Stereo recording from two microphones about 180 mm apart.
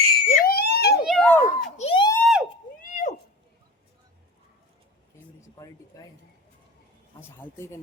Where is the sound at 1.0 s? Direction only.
5° left (ahead or behind).